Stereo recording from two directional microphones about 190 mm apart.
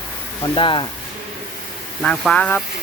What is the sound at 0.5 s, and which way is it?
Speech, 25° left (ahead or behind).